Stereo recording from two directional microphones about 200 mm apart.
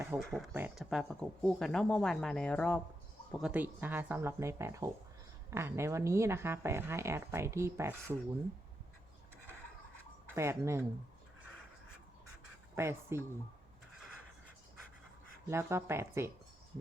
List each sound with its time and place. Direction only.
0.2 s speech: centre (ahead or behind)
3.3 s speech: 5° right (ahead or behind)
10.2 s speech: 10° right (ahead or behind)
12.7 s speech: 10° right (ahead or behind)
15.4 s speech: 10° right (ahead or behind)